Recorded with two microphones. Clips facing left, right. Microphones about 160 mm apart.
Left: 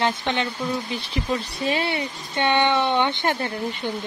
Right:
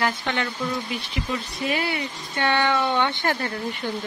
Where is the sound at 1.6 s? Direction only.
30° left (ahead or behind).